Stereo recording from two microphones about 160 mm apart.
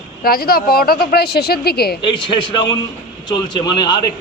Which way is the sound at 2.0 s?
30° left (ahead or behind).